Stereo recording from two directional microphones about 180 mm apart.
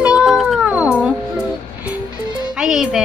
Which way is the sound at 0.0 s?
5° right (ahead or behind).